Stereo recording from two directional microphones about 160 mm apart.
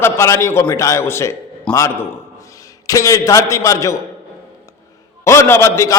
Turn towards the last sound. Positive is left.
turn(degrees=15)  # may be behind; listen again after turning